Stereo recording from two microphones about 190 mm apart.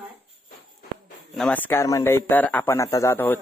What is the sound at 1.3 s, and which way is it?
Speech, 5° left (ahead or behind).